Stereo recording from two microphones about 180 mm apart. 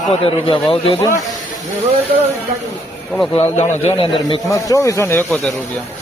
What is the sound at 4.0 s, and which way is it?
Speech, 30° left (ahead or behind).